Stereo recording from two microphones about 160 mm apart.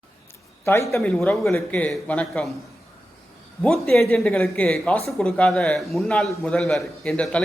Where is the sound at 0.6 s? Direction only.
15° left (ahead or behind).